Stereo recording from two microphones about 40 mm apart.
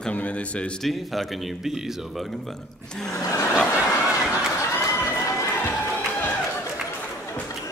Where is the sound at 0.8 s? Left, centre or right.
Centre.